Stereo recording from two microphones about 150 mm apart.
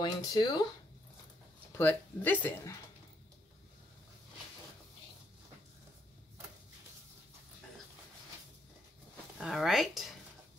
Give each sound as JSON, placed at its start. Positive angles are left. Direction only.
{"t": 0.0, "sound": "speech", "side_deg": 25}
{"t": 1.7, "sound": "speech", "side_deg": 15}
{"t": 9.4, "sound": "speech", "side_deg": 0}